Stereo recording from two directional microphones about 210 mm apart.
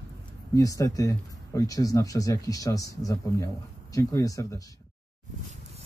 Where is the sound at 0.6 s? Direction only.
15° left (ahead or behind).